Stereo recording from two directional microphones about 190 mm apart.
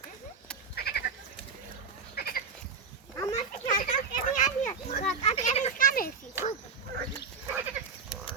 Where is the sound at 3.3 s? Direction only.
40° left (ahead or behind).